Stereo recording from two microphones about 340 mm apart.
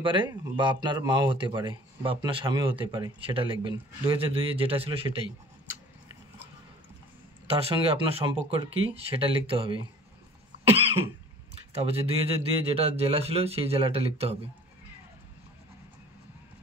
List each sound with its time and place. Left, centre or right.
0.0 s speech: centre
7.4 s speech: centre
10.7 s cough: centre
11.9 s speech: centre